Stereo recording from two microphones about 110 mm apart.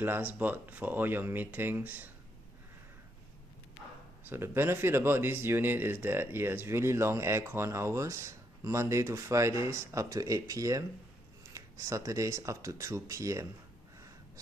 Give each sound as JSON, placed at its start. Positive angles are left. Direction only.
{"t": 0.0, "sound": "speech", "side_deg": -15}
{"t": 4.2, "sound": "speech", "side_deg": -20}